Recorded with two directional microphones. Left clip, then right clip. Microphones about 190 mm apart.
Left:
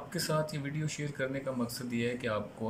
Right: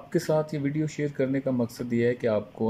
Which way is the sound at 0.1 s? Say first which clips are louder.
Right 8 dB; 40° right (ahead or behind).